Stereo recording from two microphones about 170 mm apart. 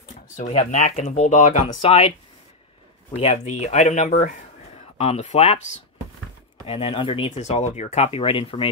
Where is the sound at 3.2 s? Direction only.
40° left (ahead or behind).